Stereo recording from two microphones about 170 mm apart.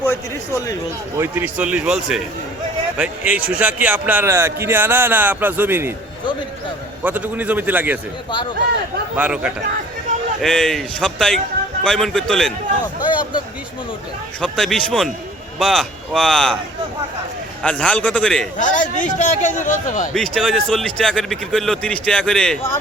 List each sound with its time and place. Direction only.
0.0 s a man's voice: 15° left (ahead or behind)
1.1 s a man's voice: 15° right (ahead or behind)
7.0 s a man's voice: 10° right (ahead or behind)
9.1 s a man's voice: 10° right (ahead or behind)
10.4 s speech: 5° left (ahead or behind)
13.0 s speech: 25° left (ahead or behind)
14.4 s speech: centre (ahead or behind)
17.6 s a man's voice: 5° left (ahead or behind)
18.6 s a man's voice: 50° left (ahead or behind)
20.1 s speech: 5° left (ahead or behind)